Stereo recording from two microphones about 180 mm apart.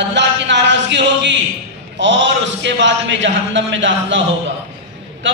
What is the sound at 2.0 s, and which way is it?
A man's voice, 90° right.